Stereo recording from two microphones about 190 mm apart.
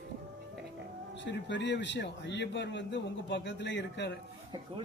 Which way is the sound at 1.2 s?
70° left (ahead or behind).